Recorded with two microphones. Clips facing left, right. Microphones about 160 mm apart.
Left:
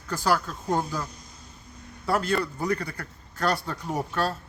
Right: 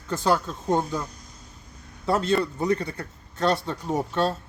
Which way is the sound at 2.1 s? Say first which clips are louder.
Right 3 dB; 25° right (ahead or behind).